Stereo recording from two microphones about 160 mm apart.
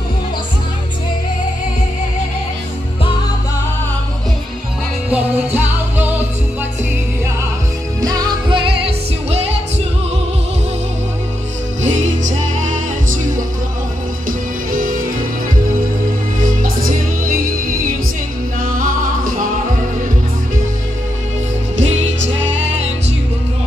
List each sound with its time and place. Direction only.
5.1 s music: 10° right (ahead or behind)
8.0 s music: 25° right (ahead or behind); by 9.6 s 40° right (ahead or behind)
11.8 s music: 50° right (ahead or behind)
16.3 s music: 60° right (ahead or behind)
21.8 s music: 45° right (ahead or behind)